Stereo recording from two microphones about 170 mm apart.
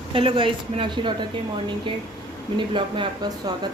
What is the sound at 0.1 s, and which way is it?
Speech, 30° right (ahead or behind).